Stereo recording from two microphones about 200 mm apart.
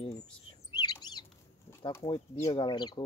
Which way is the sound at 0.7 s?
20° left (ahead or behind).